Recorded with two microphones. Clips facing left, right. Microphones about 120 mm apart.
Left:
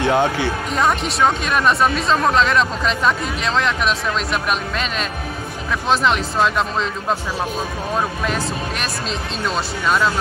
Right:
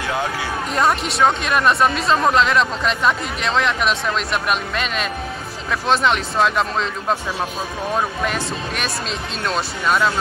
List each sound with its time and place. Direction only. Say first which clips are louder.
0.0 s speech: left 6 dB; 25° left (ahead or behind)
0.7 s speech: right 1 dB; centre (ahead or behind)
8.3 s speech: left 1 dB; centre (ahead or behind)